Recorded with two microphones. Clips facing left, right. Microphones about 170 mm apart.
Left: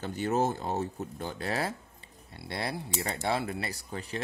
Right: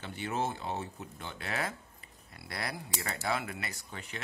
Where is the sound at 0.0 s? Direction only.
40° left (ahead or behind).